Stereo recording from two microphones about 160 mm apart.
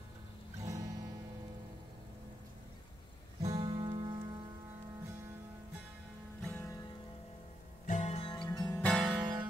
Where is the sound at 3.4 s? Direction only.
25° right (ahead or behind).